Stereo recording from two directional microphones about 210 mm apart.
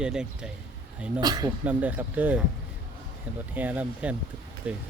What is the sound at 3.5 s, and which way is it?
Speech, 10° right (ahead or behind).